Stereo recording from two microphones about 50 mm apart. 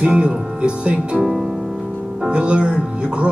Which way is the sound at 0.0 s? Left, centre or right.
Right.